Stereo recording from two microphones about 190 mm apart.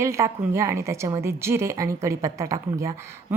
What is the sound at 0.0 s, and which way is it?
A woman's voice, 15° right (ahead or behind).